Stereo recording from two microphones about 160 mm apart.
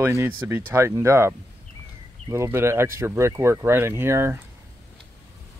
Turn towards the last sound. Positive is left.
turn(degrees=-15)  # may be behind; listen again after turning